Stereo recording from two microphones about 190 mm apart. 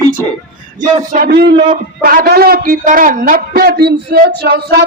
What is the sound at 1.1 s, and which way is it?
Speech, 55° right (ahead or behind).